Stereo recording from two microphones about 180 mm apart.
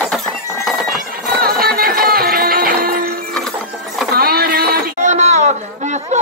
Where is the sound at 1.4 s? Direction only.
55° right (ahead or behind).